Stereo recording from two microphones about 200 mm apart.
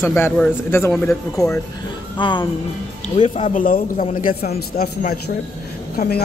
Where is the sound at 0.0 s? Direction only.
10° left (ahead or behind).